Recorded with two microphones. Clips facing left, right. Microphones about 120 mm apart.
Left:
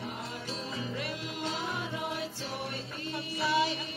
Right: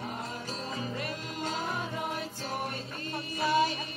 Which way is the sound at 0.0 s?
45° right (ahead or behind).